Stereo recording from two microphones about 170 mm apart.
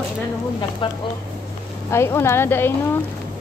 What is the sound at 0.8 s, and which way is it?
Speech, 30° left (ahead or behind).